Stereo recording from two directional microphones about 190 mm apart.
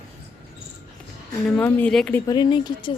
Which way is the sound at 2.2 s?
20° left (ahead or behind).